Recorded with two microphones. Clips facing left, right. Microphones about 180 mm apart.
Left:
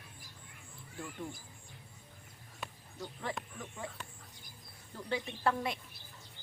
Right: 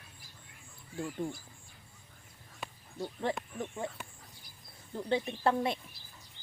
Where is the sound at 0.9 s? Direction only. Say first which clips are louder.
Right 7 dB; 30° right (ahead or behind).